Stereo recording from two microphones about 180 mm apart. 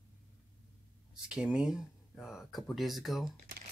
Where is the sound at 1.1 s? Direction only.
5° right (ahead or behind).